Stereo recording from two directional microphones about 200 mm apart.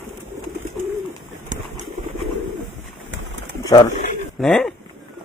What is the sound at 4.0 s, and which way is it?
Pigeon, 45° left (ahead or behind).